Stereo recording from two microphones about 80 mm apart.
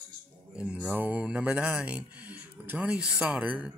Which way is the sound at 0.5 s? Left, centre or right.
Centre.